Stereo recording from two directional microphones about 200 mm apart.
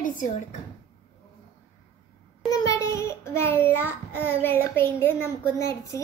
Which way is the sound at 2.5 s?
15° left (ahead or behind).